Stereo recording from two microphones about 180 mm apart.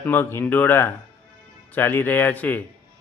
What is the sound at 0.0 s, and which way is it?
A man's voice, 10° left (ahead or behind).